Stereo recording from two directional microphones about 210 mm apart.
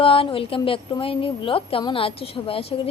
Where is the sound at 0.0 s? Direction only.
25° left (ahead or behind).